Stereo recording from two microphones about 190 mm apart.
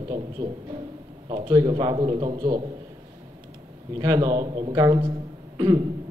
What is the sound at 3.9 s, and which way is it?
A man's voice, 20° right (ahead or behind).